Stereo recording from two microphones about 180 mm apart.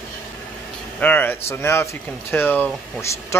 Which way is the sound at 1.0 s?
10° left (ahead or behind).